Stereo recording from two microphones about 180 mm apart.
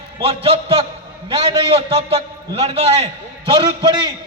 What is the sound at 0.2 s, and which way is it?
A man's voice, 30° right (ahead or behind).